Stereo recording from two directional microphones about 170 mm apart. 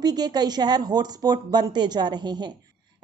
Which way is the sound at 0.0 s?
25° right (ahead or behind).